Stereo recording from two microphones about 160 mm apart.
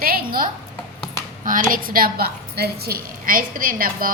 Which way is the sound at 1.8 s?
65° right (ahead or behind).